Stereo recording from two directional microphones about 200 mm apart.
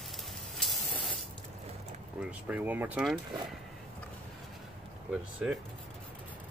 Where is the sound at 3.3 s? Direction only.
20° right (ahead or behind).